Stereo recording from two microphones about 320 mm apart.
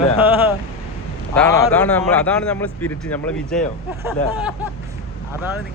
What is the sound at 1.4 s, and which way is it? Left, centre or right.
A man's voice, centre.